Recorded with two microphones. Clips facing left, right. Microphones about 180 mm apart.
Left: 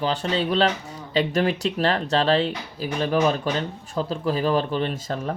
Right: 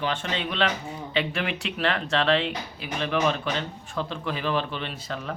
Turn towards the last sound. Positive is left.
turn(degrees=40)  # may be behind; listen again after turning